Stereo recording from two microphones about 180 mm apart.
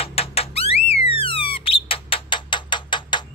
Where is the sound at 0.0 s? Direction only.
35° left (ahead or behind).